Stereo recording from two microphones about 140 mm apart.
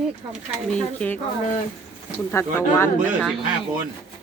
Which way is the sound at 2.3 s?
20° left (ahead or behind).